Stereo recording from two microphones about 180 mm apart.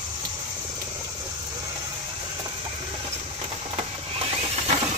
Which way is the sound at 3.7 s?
35° right (ahead or behind).